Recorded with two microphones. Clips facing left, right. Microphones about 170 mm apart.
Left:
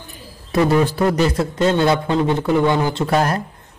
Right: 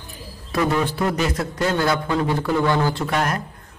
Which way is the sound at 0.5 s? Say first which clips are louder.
Left 5 dB; 25° left (ahead or behind).